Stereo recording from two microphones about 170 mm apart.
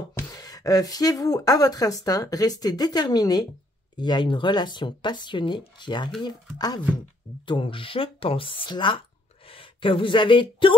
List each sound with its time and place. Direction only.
0.3 s speech: 20° left (ahead or behind)